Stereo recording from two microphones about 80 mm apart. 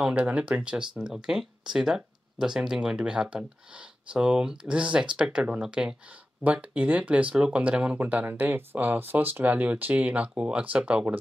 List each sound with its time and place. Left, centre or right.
0.0 s speech: centre